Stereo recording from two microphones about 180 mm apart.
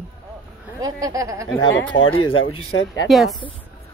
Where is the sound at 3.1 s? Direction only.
Centre (ahead or behind).